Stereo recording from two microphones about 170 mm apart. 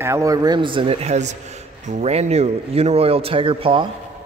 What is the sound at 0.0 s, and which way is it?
A man's voice, 15° right (ahead or behind).